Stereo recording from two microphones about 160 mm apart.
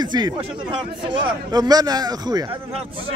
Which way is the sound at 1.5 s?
25° right (ahead or behind).